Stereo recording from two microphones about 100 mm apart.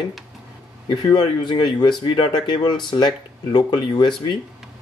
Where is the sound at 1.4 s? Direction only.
50° left (ahead or behind).